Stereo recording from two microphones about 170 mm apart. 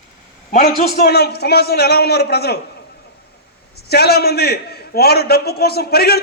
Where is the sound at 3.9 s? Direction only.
65° left (ahead or behind).